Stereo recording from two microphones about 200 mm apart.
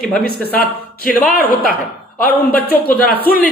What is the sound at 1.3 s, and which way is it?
Speech, 45° left (ahead or behind).